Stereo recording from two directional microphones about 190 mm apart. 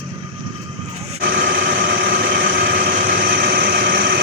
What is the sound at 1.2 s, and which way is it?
Engine, 55° right (ahead or behind).